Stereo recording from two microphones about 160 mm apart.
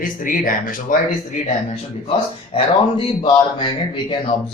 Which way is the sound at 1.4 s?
35° left (ahead or behind).